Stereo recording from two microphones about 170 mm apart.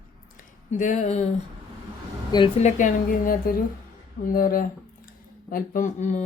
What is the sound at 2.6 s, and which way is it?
Speech, 45° left (ahead or behind).